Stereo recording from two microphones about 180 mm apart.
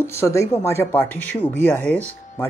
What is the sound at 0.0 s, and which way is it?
Speech, 15° left (ahead or behind).